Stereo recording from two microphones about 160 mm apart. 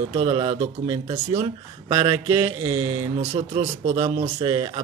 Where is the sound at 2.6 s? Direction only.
20° right (ahead or behind).